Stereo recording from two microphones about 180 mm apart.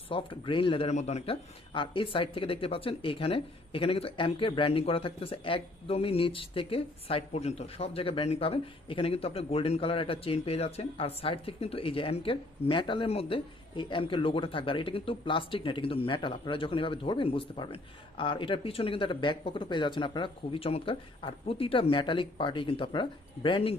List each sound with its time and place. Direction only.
0.1 s speech: 30° left (ahead or behind)